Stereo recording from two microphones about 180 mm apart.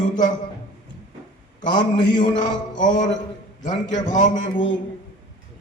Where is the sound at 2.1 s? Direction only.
45° left (ahead or behind).